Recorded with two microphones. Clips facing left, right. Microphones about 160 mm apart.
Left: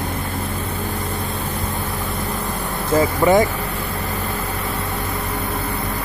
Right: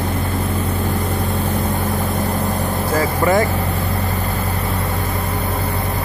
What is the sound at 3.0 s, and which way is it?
Speech, 20° left (ahead or behind).